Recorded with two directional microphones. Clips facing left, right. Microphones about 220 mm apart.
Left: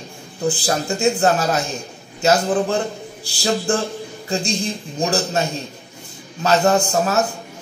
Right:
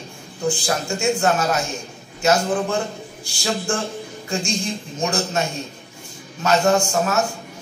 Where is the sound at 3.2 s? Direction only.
35° left (ahead or behind).